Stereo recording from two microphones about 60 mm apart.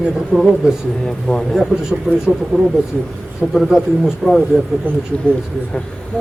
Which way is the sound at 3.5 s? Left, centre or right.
Centre.